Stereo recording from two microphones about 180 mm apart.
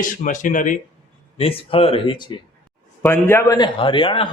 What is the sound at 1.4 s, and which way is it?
Speech, 30° left (ahead or behind).